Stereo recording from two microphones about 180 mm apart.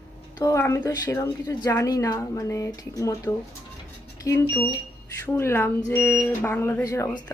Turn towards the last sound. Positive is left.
turn(degrees=20)  # may be behind; listen again after turning